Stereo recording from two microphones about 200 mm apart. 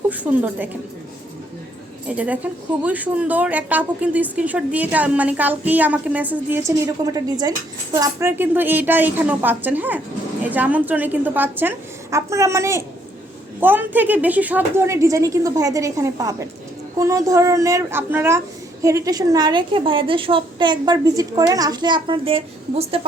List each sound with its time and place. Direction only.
0.1 s a woman's voice: 5° right (ahead or behind)
2.0 s a woman's voice: 5° right (ahead or behind); by 23.0 s 30° right (ahead or behind)